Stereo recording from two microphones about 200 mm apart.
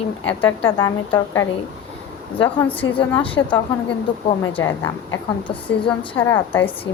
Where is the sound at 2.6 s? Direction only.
10° left (ahead or behind).